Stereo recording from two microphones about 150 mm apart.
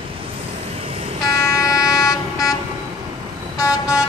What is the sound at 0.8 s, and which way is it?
Vehicle, 35° right (ahead or behind).